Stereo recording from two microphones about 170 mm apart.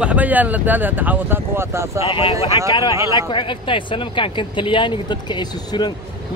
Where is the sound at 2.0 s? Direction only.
30° left (ahead or behind).